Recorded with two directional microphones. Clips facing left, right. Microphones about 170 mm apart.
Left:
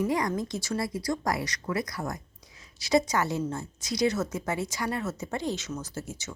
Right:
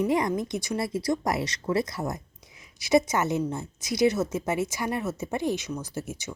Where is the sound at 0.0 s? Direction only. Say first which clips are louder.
Right 3 dB; 25° right (ahead or behind).